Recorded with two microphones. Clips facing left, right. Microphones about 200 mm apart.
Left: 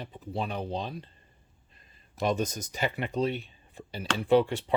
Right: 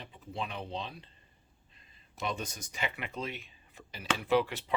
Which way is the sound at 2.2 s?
40° left (ahead or behind).